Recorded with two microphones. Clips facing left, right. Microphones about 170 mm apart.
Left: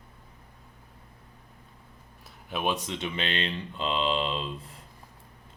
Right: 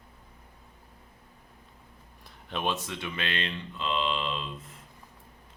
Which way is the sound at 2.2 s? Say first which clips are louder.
Left 2 dB; 10° left (ahead or behind).